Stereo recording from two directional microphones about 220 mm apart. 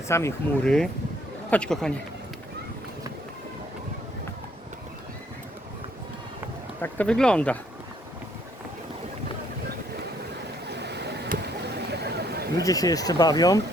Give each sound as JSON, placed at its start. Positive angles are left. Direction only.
{"t": 0.1, "sound": "speech", "side_deg": 10}
{"t": 6.8, "sound": "speech", "side_deg": 5}
{"t": 10.7, "sound": "a sound", "side_deg": -50}
{"t": 12.6, "sound": "speech", "side_deg": 15}